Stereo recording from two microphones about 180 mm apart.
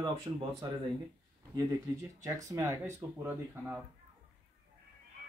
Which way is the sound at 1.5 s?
20° right (ahead or behind).